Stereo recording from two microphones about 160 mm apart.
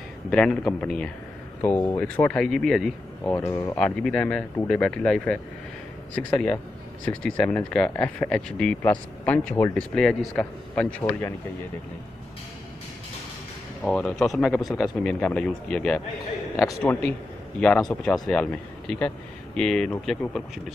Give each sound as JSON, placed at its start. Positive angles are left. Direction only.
{"t": 0.3, "sound": "speech", "side_deg": 5}
{"t": 3.3, "sound": "speech", "side_deg": 20}
{"t": 3.8, "sound": "speech", "side_deg": 5}
{"t": 13.8, "sound": "speech", "side_deg": 5}
{"t": 14.5, "sound": "speech", "side_deg": 20}
{"t": 15.0, "sound": "speech", "side_deg": 5}